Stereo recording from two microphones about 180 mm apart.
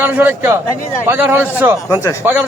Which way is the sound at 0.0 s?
10° right (ahead or behind).